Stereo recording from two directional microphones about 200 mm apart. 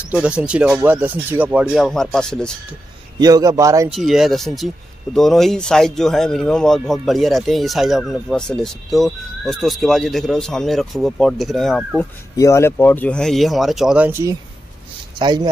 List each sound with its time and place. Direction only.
0.1 s speech: 5° right (ahead or behind)
3.2 s a man's voice: 20° right (ahead or behind)
3.9 s speech: centre (ahead or behind)
12.4 s speech: 15° left (ahead or behind); by 14.3 s 10° right (ahead or behind)
15.1 s a man's voice: 20° right (ahead or behind)